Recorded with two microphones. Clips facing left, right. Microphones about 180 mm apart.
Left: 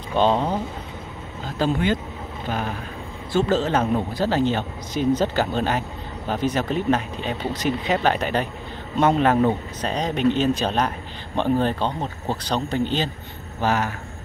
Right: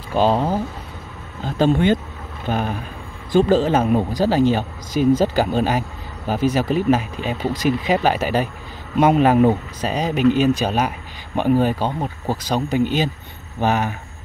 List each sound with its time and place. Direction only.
0.1 s speech: 5° right (ahead or behind)
1.6 s speech: 20° right (ahead or behind)